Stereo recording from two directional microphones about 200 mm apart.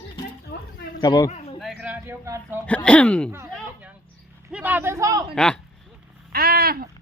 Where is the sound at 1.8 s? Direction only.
10° right (ahead or behind).